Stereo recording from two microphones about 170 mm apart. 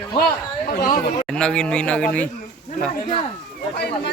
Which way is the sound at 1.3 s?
5° left (ahead or behind).